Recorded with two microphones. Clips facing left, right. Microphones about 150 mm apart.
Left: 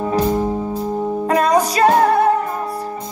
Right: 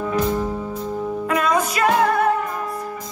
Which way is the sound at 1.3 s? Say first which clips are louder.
Left 5 dB; 35° left (ahead or behind).